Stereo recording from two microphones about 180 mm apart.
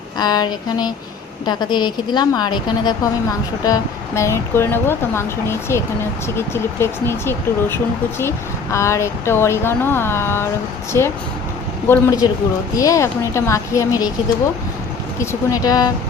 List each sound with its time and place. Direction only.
0.2 s a woman's voice: 20° left (ahead or behind)
15.2 s a woman's voice: 15° left (ahead or behind)